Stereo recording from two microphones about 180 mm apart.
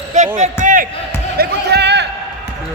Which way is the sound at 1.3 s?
65° right (ahead or behind).